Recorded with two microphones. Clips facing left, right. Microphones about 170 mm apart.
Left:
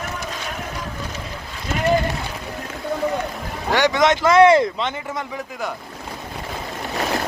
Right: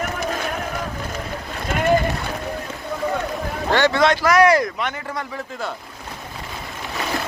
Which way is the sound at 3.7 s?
15° left (ahead or behind).